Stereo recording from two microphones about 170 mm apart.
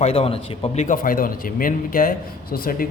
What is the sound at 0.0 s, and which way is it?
A man's voice, 35° left (ahead or behind).